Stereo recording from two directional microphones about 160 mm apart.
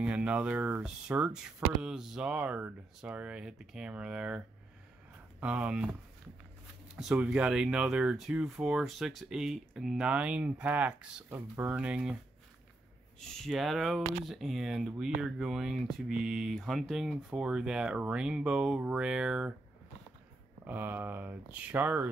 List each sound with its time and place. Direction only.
0.0 s speech: 5° right (ahead or behind)
5.4 s speech: 5° right (ahead or behind)
7.0 s speech: 5° right (ahead or behind)
13.2 s speech: 5° left (ahead or behind)
20.6 s speech: 10° right (ahead or behind)